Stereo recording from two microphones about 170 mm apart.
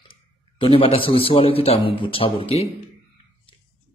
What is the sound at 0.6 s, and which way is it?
Speech, 30° left (ahead or behind).